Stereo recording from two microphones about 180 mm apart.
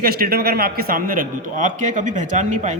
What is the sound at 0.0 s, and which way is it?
A man's voice, 55° right (ahead or behind).